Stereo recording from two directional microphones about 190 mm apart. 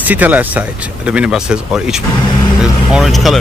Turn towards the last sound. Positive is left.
turn(degrees=0)  # may be behind; listen again after turning